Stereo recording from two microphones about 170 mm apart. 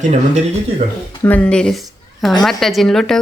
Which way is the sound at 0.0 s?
45° right (ahead or behind).